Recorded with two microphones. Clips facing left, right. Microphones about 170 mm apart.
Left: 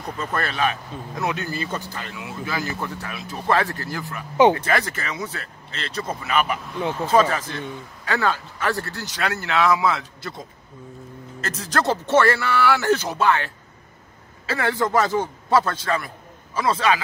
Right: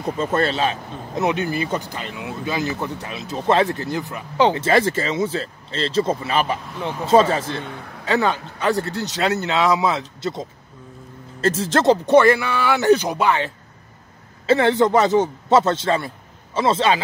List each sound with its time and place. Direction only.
0.2 s speech: 25° right (ahead or behind)
7.6 s speech: 65° right (ahead or behind)
8.0 s speech: 20° right (ahead or behind)
11.4 s speech: 30° right (ahead or behind)